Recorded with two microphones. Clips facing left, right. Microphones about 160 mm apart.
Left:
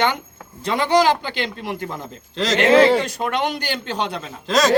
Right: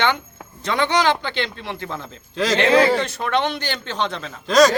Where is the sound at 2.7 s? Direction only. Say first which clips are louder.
Left 4 dB; 25° left (ahead or behind).